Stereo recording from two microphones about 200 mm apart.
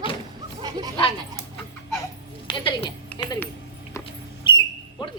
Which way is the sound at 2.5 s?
25° left (ahead or behind).